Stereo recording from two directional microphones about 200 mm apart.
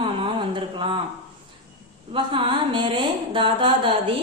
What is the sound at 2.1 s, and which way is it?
A woman's voice, 25° right (ahead or behind).